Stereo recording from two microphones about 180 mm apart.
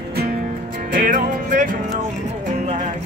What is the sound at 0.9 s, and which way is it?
Music, 50° right (ahead or behind).